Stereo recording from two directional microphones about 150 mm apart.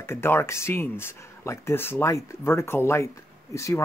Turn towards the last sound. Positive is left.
turn(degrees=20)  # may be behind; listen again after turning